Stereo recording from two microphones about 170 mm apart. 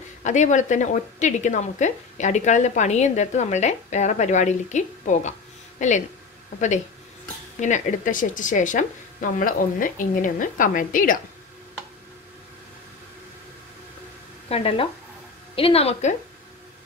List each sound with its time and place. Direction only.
0.2 s a woman's voice: 45° left (ahead or behind)
7.6 s a woman's voice: 50° left (ahead or behind)
14.5 s a woman's voice: 35° left (ahead or behind)